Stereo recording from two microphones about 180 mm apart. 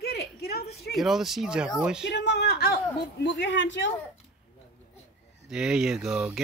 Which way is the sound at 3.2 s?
75° left (ahead or behind).